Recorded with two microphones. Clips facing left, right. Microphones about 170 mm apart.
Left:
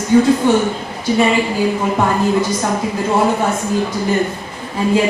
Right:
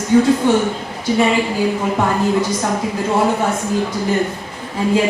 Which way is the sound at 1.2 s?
10° left (ahead or behind).